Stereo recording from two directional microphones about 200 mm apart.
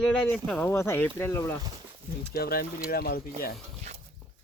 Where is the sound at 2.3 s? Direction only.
50° left (ahead or behind).